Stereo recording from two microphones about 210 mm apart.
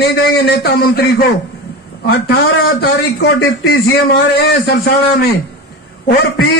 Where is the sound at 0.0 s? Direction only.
50° left (ahead or behind).